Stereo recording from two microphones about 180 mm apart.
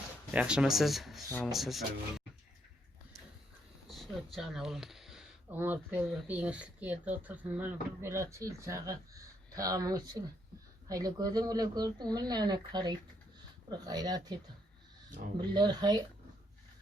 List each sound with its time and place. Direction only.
0.3 s speech: 5° right (ahead or behind)
3.8 s speech: centre (ahead or behind); by 14.3 s 20° right (ahead or behind)
15.5 s speech: 25° right (ahead or behind)